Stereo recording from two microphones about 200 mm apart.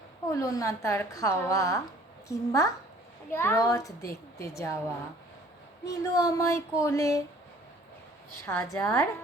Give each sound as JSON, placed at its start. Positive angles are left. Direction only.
{"t": 0.3, "sound": "a woman's voice", "side_deg": 15}
{"t": 5.8, "sound": "a woman's voice", "side_deg": 15}
{"t": 8.4, "sound": "a woman's voice", "side_deg": 15}